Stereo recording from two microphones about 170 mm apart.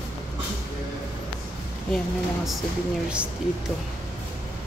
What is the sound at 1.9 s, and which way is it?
Speech, centre (ahead or behind).